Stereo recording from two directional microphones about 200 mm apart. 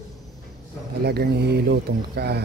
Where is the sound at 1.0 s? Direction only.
55° right (ahead or behind).